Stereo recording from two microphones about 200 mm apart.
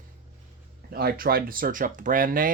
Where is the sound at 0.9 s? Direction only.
50° right (ahead or behind).